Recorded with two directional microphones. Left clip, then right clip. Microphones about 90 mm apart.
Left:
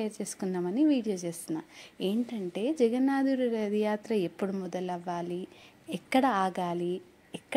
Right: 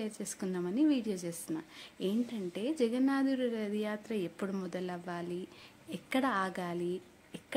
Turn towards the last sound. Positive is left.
turn(degrees=40)  # may be behind; listen again after turning